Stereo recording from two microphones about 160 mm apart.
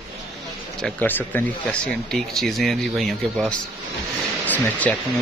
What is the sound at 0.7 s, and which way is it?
Speech, 5° left (ahead or behind).